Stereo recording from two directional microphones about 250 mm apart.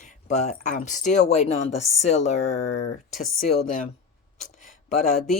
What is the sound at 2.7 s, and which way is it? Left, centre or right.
Speech, left.